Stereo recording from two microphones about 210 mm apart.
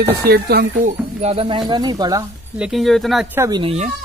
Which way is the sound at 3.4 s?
20° right (ahead or behind).